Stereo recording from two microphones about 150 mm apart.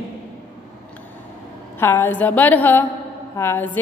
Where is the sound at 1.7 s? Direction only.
15° left (ahead or behind).